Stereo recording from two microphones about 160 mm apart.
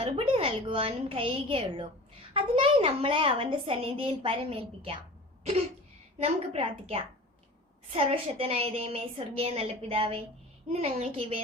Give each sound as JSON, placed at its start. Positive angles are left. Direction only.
{"t": 0.0, "sound": "a woman's voice", "side_deg": -35}
{"t": 6.2, "sound": "a woman's voice", "side_deg": -40}